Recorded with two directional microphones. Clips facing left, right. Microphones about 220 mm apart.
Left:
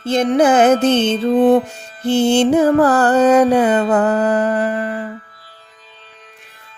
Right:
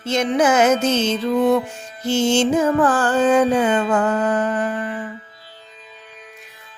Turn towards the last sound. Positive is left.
turn(degrees=40)  # may be behind; listen again after turning